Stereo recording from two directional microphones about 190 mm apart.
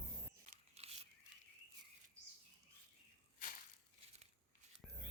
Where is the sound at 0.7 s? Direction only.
35° right (ahead or behind).